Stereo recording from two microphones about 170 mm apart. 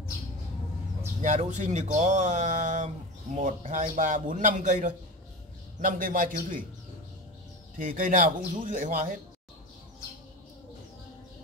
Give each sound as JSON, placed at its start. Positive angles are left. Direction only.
{"t": 1.2, "sound": "a man's voice", "side_deg": -45}
{"t": 7.8, "sound": "speech", "side_deg": -55}